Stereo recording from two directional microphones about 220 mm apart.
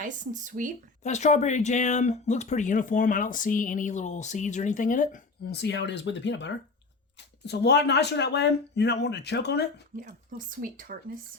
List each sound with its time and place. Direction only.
0.0 s speech: 35° right (ahead or behind)
1.0 s speech: 30° left (ahead or behind); by 9.8 s 50° left (ahead or behind)
10.0 s speech: 40° right (ahead or behind)